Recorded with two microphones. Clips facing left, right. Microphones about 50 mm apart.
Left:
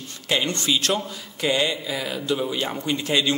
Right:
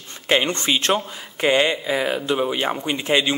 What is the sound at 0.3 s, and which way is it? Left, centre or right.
A man's voice, right.